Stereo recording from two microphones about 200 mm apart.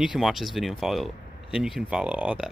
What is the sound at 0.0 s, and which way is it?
Speech, centre (ahead or behind).